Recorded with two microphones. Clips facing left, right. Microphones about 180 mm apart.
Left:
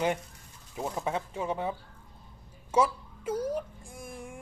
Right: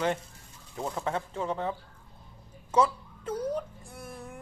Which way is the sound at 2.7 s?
10° left (ahead or behind).